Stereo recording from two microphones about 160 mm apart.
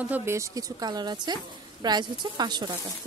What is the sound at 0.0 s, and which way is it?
A woman's voice, 15° right (ahead or behind).